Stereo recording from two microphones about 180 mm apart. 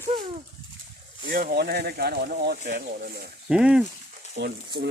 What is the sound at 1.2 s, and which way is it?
Speech, 55° right (ahead or behind).